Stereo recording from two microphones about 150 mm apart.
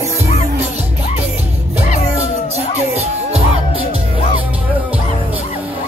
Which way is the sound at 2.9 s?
40° right (ahead or behind).